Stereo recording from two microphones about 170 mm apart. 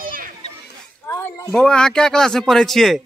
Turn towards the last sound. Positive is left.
turn(degrees=0)  # may be behind; listen again after turning